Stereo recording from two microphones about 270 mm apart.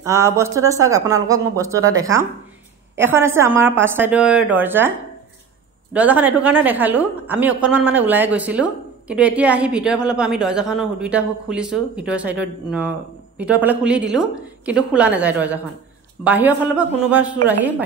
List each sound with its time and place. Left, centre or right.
0.0 s speech: centre
5.9 s a woman's voice: centre